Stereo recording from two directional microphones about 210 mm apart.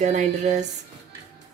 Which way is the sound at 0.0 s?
35° right (ahead or behind).